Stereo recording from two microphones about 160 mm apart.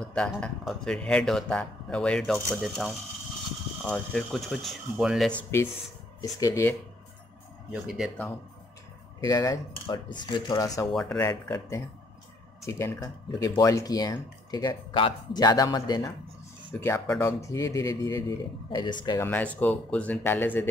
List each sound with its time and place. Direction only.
0.0 s a man's voice: 5° left (ahead or behind)
5.3 s speech: 15° left (ahead or behind)
7.7 s a man's voice: centre (ahead or behind)
9.2 s speech: 25° left (ahead or behind)
10.9 s a man's voice: centre (ahead or behind)
11.1 s speech: 15° left (ahead or behind)
19.2 s speech: 10° left (ahead or behind)